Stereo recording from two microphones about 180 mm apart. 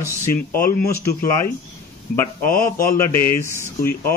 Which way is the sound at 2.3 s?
50° left (ahead or behind).